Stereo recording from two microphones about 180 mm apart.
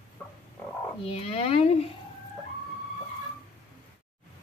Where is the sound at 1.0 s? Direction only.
30° left (ahead or behind).